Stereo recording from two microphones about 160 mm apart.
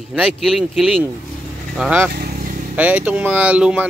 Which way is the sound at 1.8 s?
10° right (ahead or behind).